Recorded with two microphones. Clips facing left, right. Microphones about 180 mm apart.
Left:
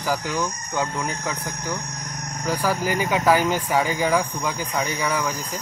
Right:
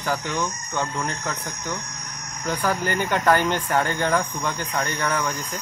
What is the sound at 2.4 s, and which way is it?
Speech, 5° left (ahead or behind).